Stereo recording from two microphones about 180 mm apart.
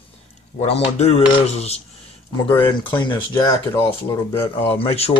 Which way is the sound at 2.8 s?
25° left (ahead or behind).